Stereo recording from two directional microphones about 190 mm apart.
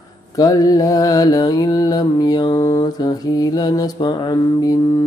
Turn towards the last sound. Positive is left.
turn(degrees=20)  # may be behind; listen again after turning